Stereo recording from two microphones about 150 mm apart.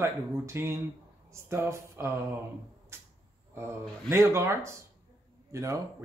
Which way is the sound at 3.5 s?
15° right (ahead or behind).